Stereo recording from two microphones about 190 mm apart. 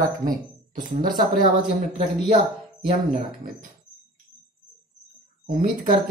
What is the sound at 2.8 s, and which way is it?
Speech, 45° right (ahead or behind).